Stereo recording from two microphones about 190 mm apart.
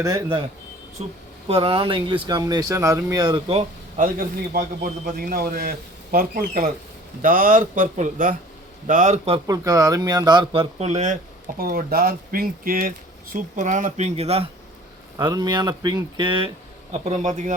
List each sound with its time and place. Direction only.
0.0 s speech: 20° right (ahead or behind)
1.0 s speech: 35° right (ahead or behind)
3.5 s a man's voice: 35° right (ahead or behind)
9.5 s speech: 20° right (ahead or behind)
15.2 s speech: 20° right (ahead or behind)
16.9 s speech: 35° right (ahead or behind)